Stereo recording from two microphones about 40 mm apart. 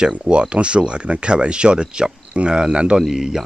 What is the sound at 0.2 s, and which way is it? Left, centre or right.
Speech, right.